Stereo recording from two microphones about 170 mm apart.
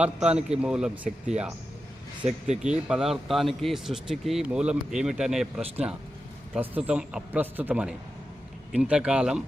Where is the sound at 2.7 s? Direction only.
5° right (ahead or behind).